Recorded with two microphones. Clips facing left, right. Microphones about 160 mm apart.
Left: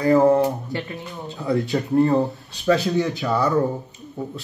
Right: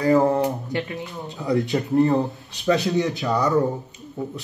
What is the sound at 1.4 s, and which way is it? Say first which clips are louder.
Speech: even; 20° right (ahead or behind).